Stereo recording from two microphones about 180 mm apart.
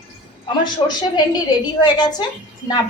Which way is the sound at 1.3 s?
25° left (ahead or behind).